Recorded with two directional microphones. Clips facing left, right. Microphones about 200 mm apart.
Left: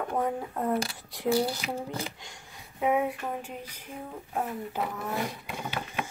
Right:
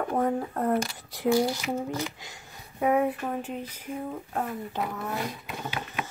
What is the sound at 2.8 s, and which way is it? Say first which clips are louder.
Speech: right 2 dB; 5° left (ahead or behind).